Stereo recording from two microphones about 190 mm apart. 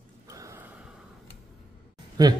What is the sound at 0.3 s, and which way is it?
Gasp, 15° right (ahead or behind).